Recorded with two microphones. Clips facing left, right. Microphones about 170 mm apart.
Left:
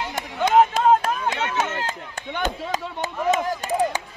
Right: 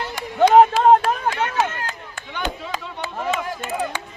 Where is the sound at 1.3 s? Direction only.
25° left (ahead or behind).